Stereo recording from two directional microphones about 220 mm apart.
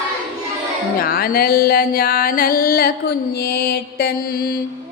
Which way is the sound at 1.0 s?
40° left (ahead or behind).